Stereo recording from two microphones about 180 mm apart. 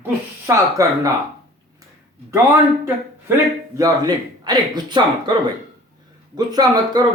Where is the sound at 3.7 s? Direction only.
20° right (ahead or behind).